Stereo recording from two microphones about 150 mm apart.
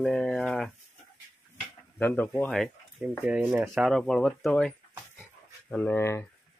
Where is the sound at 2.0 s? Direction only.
10° left (ahead or behind).